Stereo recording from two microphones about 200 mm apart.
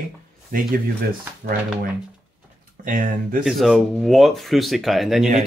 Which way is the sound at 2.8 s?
40° right (ahead or behind).